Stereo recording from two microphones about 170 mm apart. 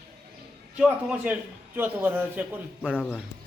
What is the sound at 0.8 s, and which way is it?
A man's voice, 5° right (ahead or behind).